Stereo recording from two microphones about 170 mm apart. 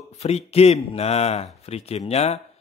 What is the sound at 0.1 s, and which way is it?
Speech, 40° left (ahead or behind).